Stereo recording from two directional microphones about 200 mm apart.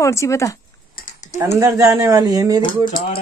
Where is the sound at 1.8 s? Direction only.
15° right (ahead or behind).